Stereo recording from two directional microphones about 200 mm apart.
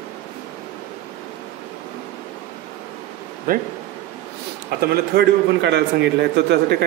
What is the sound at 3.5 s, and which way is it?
Speech, 45° right (ahead or behind).